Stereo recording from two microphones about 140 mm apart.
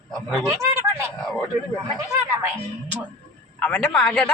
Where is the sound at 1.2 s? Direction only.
Centre (ahead or behind).